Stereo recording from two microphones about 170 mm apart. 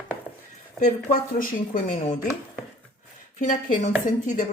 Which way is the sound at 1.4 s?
50° left (ahead or behind).